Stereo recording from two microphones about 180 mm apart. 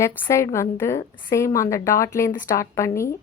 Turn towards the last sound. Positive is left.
turn(degrees=15)  # may be behind; listen again after turning